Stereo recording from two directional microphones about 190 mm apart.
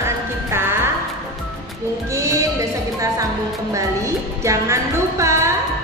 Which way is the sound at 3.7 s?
15° right (ahead or behind).